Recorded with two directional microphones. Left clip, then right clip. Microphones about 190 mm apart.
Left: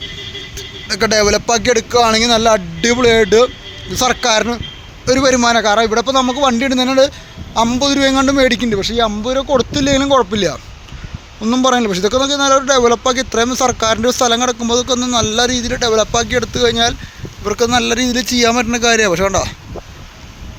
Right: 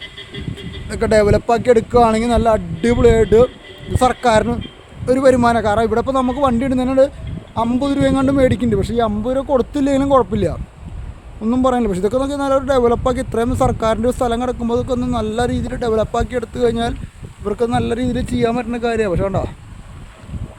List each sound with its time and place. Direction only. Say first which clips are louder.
0.9 s a man's voice: left 1 dB; centre (ahead or behind)
8.8 s a man's voice: left 3 dB; 20° right (ahead or behind); by 19.5 s centre (ahead or behind)